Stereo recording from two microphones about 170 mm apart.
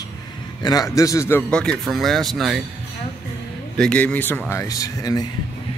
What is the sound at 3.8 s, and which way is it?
A man's voice, 5° left (ahead or behind).